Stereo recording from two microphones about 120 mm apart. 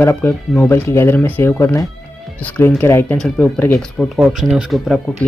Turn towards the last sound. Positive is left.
turn(degrees=0)  # may be behind; listen again after turning